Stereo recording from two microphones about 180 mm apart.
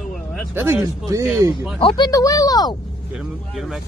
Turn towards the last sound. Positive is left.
turn(degrees=0)  # may be behind; listen again after turning